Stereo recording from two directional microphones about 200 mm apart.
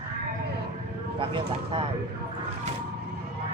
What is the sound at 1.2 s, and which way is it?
Speech, 25° right (ahead or behind).